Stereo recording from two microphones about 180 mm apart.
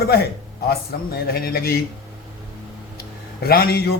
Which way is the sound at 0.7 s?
60° left (ahead or behind).